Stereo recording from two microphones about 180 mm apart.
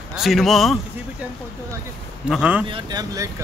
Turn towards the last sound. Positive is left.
turn(degrees=-20)  # may be behind; listen again after turning